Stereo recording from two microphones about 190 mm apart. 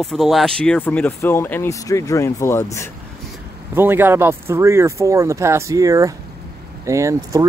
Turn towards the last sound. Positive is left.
turn(degrees=-15)  # may be behind; listen again after turning